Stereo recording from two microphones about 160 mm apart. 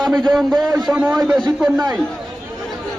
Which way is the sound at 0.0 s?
25° right (ahead or behind).